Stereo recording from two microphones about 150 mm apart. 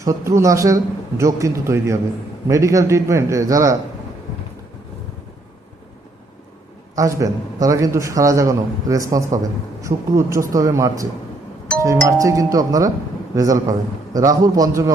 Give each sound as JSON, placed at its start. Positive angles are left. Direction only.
{"t": 0.0, "sound": "a man's voice", "side_deg": -20}
{"t": 6.9, "sound": "a man's voice", "side_deg": -20}